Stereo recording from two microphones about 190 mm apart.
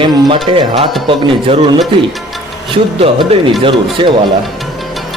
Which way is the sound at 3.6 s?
25° right (ahead or behind).